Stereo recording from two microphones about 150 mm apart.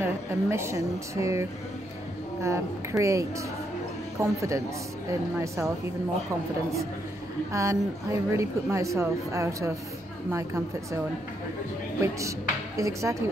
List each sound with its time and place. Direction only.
0.0 s a woman's voice: 15° right (ahead or behind)
7.5 s a woman's voice: 20° right (ahead or behind)
12.0 s a woman's voice: 20° right (ahead or behind)